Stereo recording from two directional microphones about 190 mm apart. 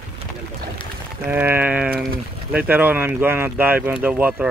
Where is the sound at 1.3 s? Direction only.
10° right (ahead or behind).